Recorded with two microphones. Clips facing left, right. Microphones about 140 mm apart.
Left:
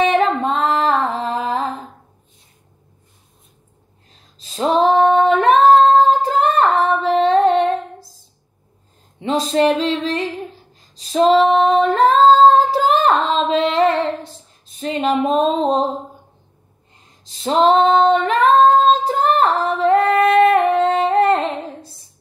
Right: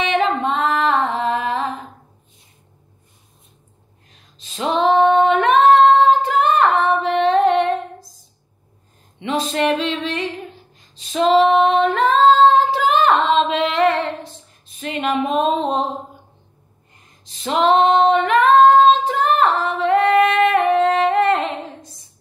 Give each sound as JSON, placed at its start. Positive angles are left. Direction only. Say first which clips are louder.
{"t": 0.0, "sound": "female singing", "louder": "left 3 dB", "side_deg": 40}
{"t": 4.1, "sound": "female singing", "louder": "left 2 dB", "side_deg": 35}
{"t": 9.2, "sound": "female singing", "louder": "left 4 dB", "side_deg": 35}
{"t": 17.0, "sound": "female singing", "louder": "left 3 dB", "side_deg": 35}